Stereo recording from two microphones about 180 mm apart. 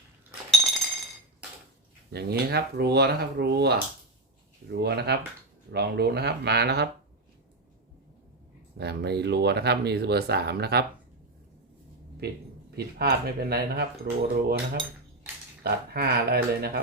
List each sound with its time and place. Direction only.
2.1 s speech: 65° right (ahead or behind)
8.8 s speech: 65° right (ahead or behind)
12.7 s speech: 60° right (ahead or behind)